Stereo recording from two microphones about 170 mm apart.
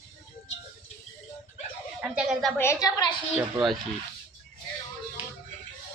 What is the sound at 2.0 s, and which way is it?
Speech, 5° right (ahead or behind).